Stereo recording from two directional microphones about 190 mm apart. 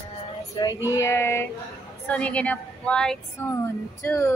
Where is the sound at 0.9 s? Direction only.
15° left (ahead or behind).